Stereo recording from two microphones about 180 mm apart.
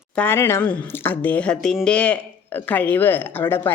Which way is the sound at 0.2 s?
15° left (ahead or behind).